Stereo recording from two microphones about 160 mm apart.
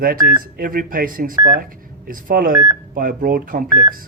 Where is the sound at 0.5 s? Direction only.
65° right (ahead or behind).